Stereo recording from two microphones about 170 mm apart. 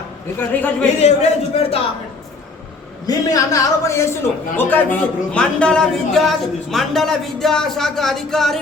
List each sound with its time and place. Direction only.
0.3 s a man's voice: 10° left (ahead or behind)
1.0 s a man's voice: 40° left (ahead or behind)
3.1 s a man's voice: 20° left (ahead or behind); by 8.5 s centre (ahead or behind)